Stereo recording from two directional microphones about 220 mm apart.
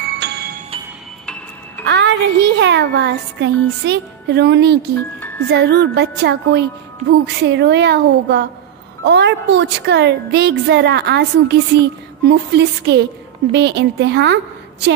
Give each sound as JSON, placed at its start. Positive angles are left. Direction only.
{"t": 0.0, "sound": "music", "side_deg": -50}
{"t": 1.9, "sound": "a woman's voice", "side_deg": -55}